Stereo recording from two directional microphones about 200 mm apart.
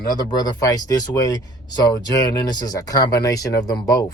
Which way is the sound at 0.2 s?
20° left (ahead or behind).